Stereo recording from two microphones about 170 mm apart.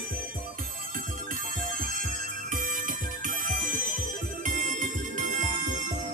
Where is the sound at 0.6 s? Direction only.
50° right (ahead or behind).